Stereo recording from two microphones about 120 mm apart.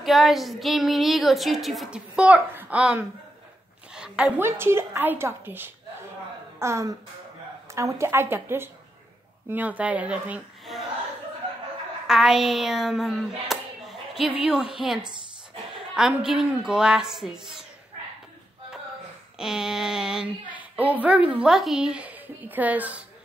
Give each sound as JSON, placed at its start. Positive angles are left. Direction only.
{"t": 0.0, "sound": "speech", "side_deg": 0}
{"t": 3.9, "sound": "a sound", "side_deg": -5}
{"t": 4.4, "sound": "speech", "side_deg": -20}
{"t": 12.1, "sound": "speech", "side_deg": -5}
{"t": 19.3, "sound": "speech", "side_deg": -5}